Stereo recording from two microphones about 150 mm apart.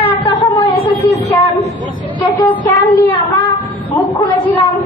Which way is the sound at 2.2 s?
20° left (ahead or behind).